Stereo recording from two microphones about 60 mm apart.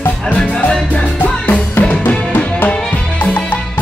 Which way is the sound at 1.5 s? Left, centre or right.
Left.